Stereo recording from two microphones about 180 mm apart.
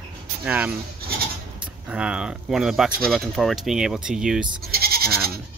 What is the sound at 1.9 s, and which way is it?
Speech, 5° right (ahead or behind).